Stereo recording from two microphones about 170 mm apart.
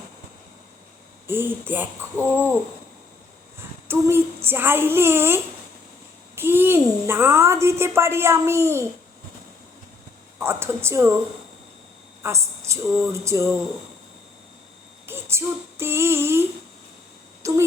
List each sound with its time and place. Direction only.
1.3 s a woman's voice: 10° right (ahead or behind)
3.8 s a woman's voice: 15° right (ahead or behind)
10.4 s a woman's voice: 15° right (ahead or behind)
12.2 s a woman's voice: 15° right (ahead or behind)
15.0 s a sound: 15° right (ahead or behind)
17.4 s speech: 15° right (ahead or behind)